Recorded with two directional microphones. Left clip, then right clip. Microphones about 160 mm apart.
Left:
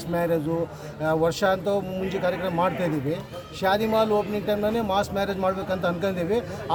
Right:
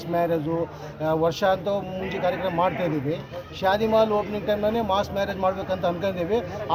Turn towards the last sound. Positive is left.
turn(degrees=20)  # may be behind; listen again after turning